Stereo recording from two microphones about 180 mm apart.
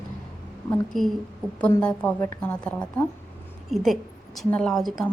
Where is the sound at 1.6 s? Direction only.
10° left (ahead or behind).